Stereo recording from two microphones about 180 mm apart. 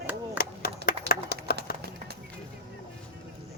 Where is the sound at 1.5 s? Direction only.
60° left (ahead or behind).